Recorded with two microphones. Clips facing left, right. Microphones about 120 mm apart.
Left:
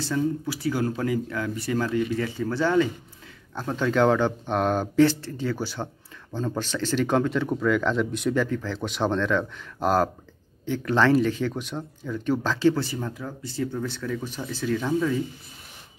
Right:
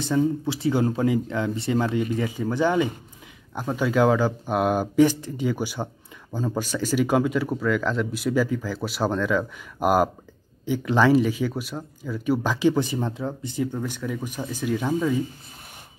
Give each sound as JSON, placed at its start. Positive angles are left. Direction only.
{"t": 0.0, "sound": "speech", "side_deg": -20}